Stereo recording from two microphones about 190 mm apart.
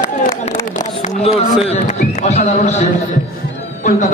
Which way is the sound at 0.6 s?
45° left (ahead or behind).